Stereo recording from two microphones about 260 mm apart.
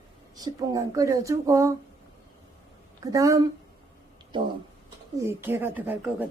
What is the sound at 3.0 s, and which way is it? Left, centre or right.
Speech, centre.